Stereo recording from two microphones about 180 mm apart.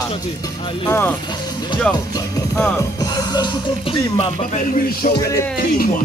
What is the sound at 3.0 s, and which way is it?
Music, 20° left (ahead or behind).